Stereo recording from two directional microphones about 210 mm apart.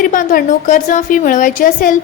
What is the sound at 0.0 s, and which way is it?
A woman's voice, 40° left (ahead or behind).